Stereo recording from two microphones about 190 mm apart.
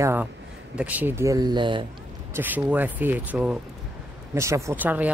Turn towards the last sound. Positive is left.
turn(degrees=-10)  # may be behind; listen again after turning